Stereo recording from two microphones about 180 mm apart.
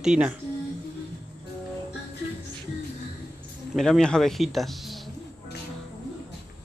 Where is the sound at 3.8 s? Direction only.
5° left (ahead or behind).